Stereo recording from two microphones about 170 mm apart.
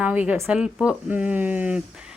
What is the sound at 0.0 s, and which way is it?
Speech, 10° right (ahead or behind).